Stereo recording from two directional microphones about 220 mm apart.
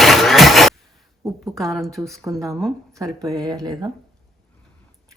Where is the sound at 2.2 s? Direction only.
15° right (ahead or behind).